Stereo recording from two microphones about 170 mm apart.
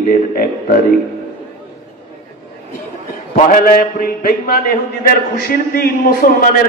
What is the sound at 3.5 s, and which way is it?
A man's voice, 55° left (ahead or behind).